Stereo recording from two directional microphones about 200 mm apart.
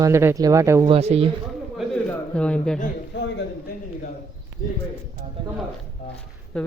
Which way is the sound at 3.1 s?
65° left (ahead or behind).